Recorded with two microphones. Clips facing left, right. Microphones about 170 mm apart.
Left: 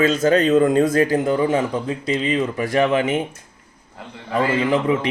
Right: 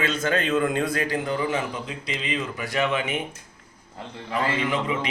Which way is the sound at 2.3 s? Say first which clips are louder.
Left 5 dB; 30° left (ahead or behind).